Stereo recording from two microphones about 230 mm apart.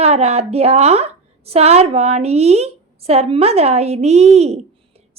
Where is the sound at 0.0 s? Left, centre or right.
Right.